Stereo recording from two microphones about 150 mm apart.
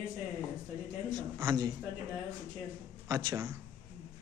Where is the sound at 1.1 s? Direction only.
25° right (ahead or behind).